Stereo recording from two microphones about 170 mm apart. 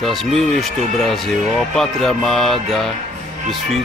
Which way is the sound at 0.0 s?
Centre (ahead or behind).